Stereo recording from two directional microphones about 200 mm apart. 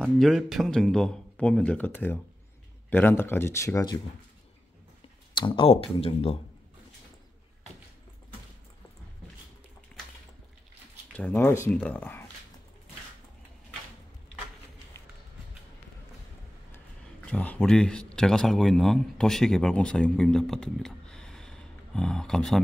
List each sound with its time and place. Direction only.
0.0 s speech: centre (ahead or behind); by 4.0 s 20° left (ahead or behind)
5.3 s speech: 25° left (ahead or behind)
11.1 s speech: 10° left (ahead or behind)
17.3 s a man's voice: 5° left (ahead or behind)